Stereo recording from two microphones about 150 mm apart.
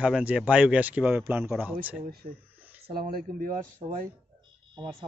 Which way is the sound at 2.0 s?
85° right.